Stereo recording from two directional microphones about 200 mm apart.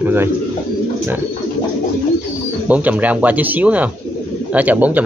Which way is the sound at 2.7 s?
5° right (ahead or behind).